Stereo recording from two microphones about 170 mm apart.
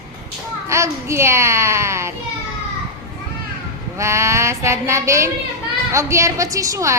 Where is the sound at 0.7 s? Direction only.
15° right (ahead or behind).